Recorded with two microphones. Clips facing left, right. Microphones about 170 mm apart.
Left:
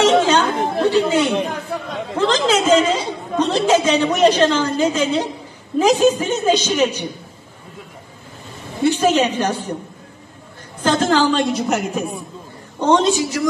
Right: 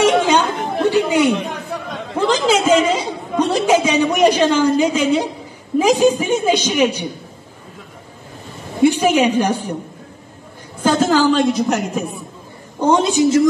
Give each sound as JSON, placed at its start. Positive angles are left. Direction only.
{"t": 0.0, "sound": "chatter", "side_deg": -10}
{"t": 2.1, "sound": "a woman's voice", "side_deg": -10}
{"t": 8.8, "sound": "a woman's voice", "side_deg": -10}
{"t": 10.8, "sound": "a woman's voice", "side_deg": -10}
{"t": 12.8, "sound": "a woman's voice", "side_deg": -10}
{"t": 13.2, "sound": "a woman's voice", "side_deg": -20}